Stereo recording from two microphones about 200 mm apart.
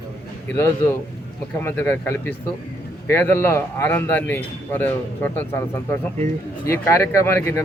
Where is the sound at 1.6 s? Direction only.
10° left (ahead or behind).